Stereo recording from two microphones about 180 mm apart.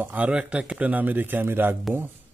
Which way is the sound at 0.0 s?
10° right (ahead or behind).